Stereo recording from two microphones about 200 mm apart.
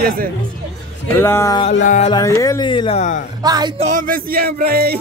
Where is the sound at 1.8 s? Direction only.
40° left (ahead or behind).